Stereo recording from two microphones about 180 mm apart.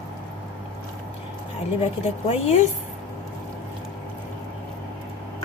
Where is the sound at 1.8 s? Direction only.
35° left (ahead or behind).